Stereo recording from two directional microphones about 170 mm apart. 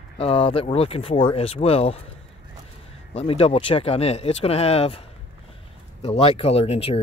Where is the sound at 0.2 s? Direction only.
35° left (ahead or behind).